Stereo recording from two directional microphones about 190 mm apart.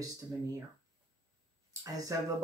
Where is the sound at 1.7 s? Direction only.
20° right (ahead or behind).